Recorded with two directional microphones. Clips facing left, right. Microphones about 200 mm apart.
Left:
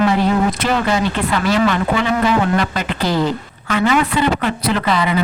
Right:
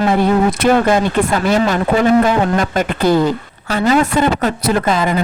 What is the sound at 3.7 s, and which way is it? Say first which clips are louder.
Speech: right 2 dB; 35° right (ahead or behind).